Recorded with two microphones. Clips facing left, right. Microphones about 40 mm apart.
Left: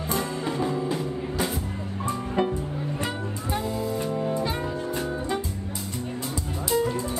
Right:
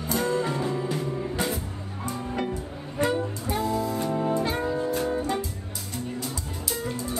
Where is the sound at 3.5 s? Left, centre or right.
Centre.